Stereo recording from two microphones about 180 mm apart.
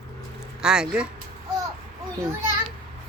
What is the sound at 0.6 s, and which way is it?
Speech, 5° right (ahead or behind).